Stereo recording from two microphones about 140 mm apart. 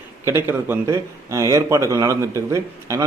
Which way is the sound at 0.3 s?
15° right (ahead or behind).